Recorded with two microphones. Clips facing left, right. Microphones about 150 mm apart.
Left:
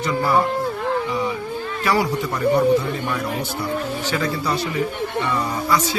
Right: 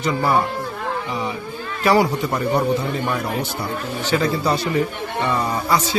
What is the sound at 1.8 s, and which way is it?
Speech, 25° right (ahead or behind).